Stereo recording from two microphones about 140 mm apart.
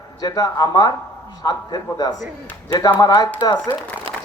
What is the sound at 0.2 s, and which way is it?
Speech, 30° left (ahead or behind).